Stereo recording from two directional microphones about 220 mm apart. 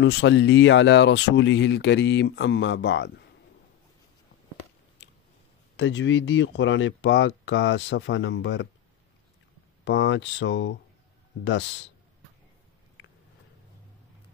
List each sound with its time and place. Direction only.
0.0 s speech: 55° left (ahead or behind)
5.8 s speech: 55° left (ahead or behind)
9.8 s speech: 55° left (ahead or behind)